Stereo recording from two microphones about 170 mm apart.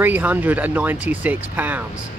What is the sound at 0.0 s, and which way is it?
Speech, 10° right (ahead or behind).